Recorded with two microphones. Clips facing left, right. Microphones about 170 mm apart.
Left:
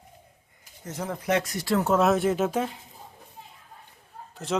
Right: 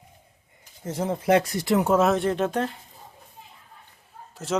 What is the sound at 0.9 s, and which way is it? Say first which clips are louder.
Speech: right 5 dB; 25° right (ahead or behind).